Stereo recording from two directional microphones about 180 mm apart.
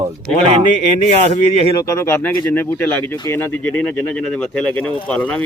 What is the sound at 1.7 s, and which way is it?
Speech, 15° left (ahead or behind).